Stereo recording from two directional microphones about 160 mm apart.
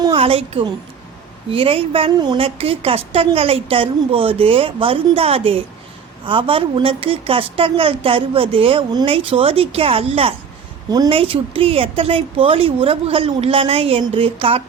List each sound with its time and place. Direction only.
0.0 s a woman's voice: 35° right (ahead or behind)